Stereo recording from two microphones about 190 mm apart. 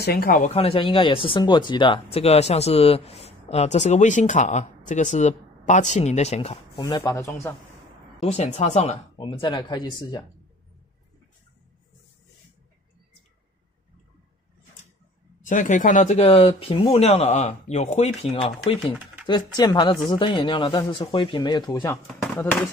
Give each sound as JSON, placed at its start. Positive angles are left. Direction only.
{"t": 0.0, "sound": "speech", "side_deg": 55}
{"t": 6.8, "sound": "speech", "side_deg": 20}
{"t": 8.2, "sound": "speech", "side_deg": 35}
{"t": 15.4, "sound": "speech", "side_deg": 40}
{"t": 17.1, "sound": "speech", "side_deg": 35}